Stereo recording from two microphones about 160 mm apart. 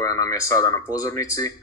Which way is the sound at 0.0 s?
20° left (ahead or behind).